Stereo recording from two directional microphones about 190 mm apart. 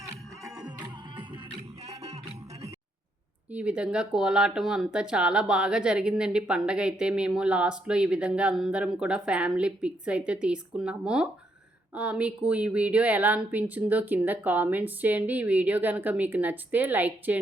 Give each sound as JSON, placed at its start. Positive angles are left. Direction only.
{"t": 0.0, "sound": "music", "side_deg": -20}
{"t": 2.0, "sound": "music", "side_deg": -35}
{"t": 3.5, "sound": "speech", "side_deg": -5}